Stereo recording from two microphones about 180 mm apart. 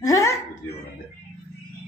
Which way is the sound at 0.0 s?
20° left (ahead or behind).